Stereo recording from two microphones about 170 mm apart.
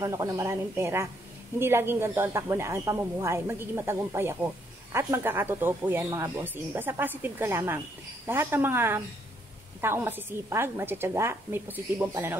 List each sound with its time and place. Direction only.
0.0 s speech: 20° right (ahead or behind)